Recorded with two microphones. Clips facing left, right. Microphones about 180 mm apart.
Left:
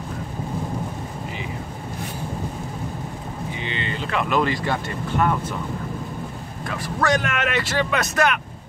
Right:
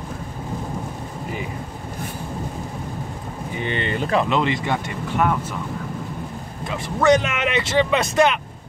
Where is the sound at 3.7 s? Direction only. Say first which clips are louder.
Right 6 dB; 50° right (ahead or behind).